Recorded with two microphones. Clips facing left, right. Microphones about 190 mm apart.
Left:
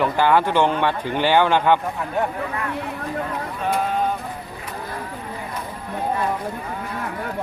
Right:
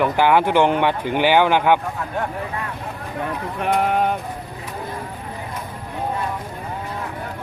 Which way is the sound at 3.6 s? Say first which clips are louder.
Right 3 dB; 70° right (ahead or behind).